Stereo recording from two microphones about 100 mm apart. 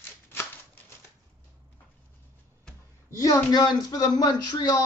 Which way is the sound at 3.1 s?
35° left (ahead or behind).